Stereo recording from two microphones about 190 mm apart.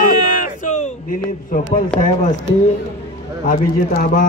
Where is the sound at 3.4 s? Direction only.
45° left (ahead or behind).